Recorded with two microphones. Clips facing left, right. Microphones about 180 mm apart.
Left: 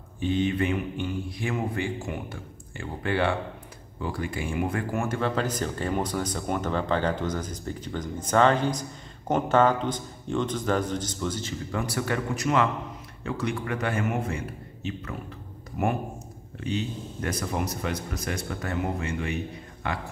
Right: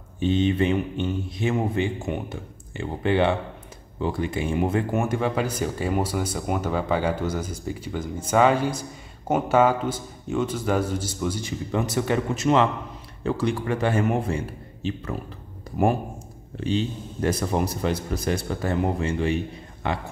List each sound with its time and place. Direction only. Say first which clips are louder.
0.2 s a man's voice: right 4 dB; 25° right (ahead or behind)
16.5 s a man's voice: right 5 dB; 30° right (ahead or behind)